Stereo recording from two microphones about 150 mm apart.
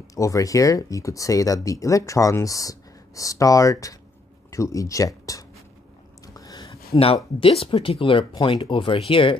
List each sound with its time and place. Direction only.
0.0 s speech: 20° left (ahead or behind)
6.2 s a sound: 25° left (ahead or behind)
7.3 s speech: 40° left (ahead or behind)